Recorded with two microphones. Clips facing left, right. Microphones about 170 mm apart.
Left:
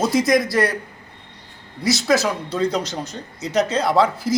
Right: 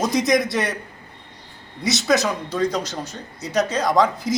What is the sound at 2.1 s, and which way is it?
Speech, 15° right (ahead or behind).